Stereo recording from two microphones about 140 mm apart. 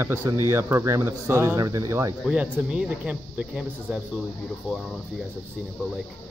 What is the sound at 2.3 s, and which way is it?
Speech, 5° right (ahead or behind).